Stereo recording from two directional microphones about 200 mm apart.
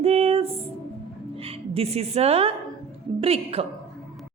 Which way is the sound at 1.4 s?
30° right (ahead or behind).